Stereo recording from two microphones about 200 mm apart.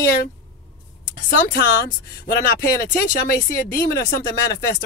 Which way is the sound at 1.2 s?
40° left (ahead or behind).